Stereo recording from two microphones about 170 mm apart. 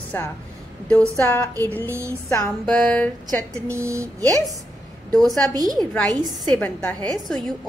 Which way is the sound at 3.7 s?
15° right (ahead or behind).